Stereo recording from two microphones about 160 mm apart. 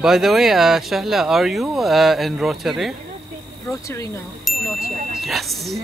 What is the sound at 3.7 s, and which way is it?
Speech, 20° left (ahead or behind).